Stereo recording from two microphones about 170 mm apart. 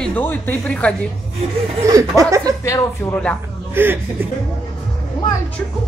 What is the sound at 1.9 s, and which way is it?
Speech, 20° right (ahead or behind).